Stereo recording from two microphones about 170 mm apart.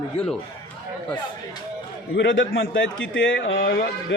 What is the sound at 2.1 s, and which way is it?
A man's voice, 90° left.